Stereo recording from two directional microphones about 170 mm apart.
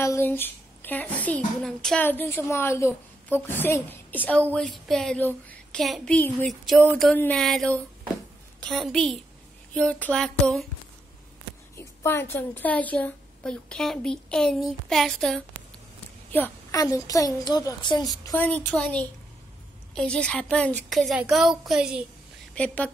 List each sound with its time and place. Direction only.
0.0 s a woman's voice: 15° left (ahead or behind)
11.7 s a woman's voice: 15° left (ahead or behind); by 22.0 s 5° right (ahead or behind)